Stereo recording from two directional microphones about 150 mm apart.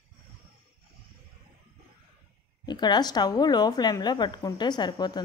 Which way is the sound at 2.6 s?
30° left (ahead or behind).